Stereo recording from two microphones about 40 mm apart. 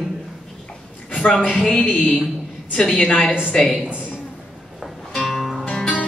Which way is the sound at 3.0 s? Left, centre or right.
Left.